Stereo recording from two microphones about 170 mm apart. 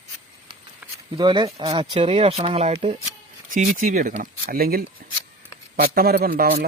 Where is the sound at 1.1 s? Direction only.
30° right (ahead or behind).